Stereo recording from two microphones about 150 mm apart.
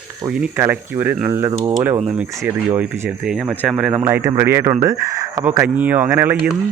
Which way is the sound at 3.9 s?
15° right (ahead or behind).